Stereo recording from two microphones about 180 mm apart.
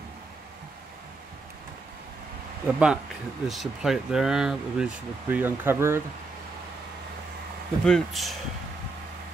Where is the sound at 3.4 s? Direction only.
Centre (ahead or behind).